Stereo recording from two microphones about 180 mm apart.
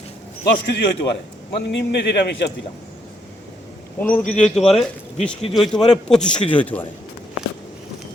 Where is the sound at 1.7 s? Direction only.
75° left (ahead or behind).